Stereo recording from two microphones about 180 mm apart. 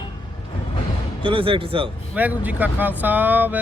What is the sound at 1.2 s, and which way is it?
Speech, 30° right (ahead or behind).